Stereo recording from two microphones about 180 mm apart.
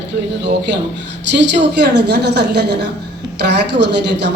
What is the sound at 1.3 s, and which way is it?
Speech, 75° right (ahead or behind).